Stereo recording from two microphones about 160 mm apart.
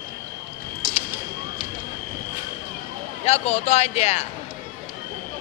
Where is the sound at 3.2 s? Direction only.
40° left (ahead or behind).